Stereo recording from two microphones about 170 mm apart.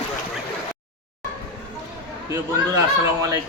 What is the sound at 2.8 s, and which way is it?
Speech, 20° right (ahead or behind).